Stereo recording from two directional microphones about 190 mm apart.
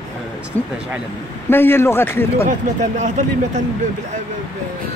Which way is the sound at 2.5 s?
40° right (ahead or behind).